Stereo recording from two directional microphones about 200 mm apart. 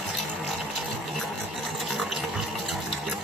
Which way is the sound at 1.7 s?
Centre (ahead or behind).